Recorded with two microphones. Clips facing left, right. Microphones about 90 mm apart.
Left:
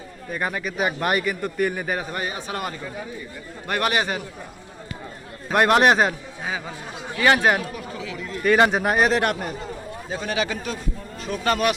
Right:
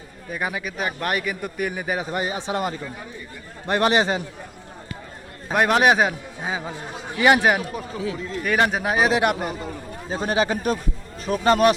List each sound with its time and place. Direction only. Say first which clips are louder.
0.3 s a man's voice: left 1 dB; 5° right (ahead or behind)
0.8 s a man's voice: left 3 dB; 5° left (ahead or behind)
2.0 s a man's voice: right 3 dB; 20° right (ahead or behind)
5.5 s a man's voice: left 1 dB; centre (ahead or behind)
6.4 s speech: right 1 dB; 20° right (ahead or behind)
7.3 s a man's voice: right 1 dB; 5° right (ahead or behind)
7.8 s speech: right 4 dB; 35° right (ahead or behind)
8.4 s a man's voice: left 3 dB; centre (ahead or behind)
10.1 s speech: right 4 dB; 35° right (ahead or behind)
11.4 s speech: right 5 dB; 35° right (ahead or behind)